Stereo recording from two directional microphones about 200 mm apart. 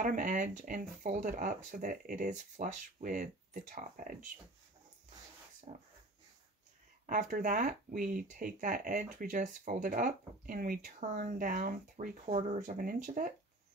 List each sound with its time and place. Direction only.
0.0 s speech: 40° right (ahead or behind)
5.7 s speech: 35° right (ahead or behind)
7.1 s speech: 40° right (ahead or behind)